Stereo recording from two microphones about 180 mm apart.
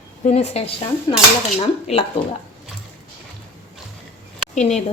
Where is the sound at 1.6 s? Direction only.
35° left (ahead or behind).